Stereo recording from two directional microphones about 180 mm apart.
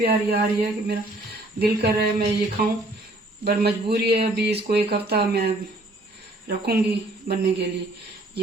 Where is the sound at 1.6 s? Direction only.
65° right (ahead or behind).